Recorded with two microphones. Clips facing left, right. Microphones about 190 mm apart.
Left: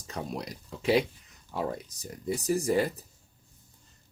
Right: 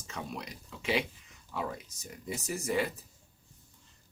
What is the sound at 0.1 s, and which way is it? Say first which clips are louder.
Speech: left 5 dB; 35° left (ahead or behind).